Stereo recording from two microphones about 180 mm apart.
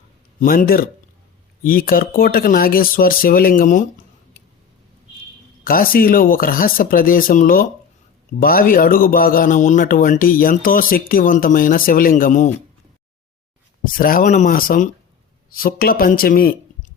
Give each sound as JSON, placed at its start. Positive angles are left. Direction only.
{"t": 0.3, "sound": "speech", "side_deg": 55}
{"t": 5.6, "sound": "speech", "side_deg": 55}
{"t": 13.9, "sound": "speech", "side_deg": 50}